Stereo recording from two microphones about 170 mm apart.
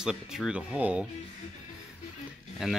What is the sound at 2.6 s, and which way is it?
Speech, 5° right (ahead or behind).